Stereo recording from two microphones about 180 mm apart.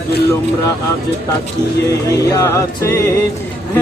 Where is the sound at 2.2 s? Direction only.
15° left (ahead or behind).